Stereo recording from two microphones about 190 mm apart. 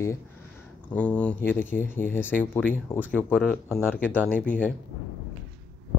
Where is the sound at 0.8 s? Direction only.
5° left (ahead or behind).